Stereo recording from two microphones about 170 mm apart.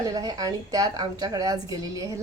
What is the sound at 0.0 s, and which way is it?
A woman's voice, 20° right (ahead or behind).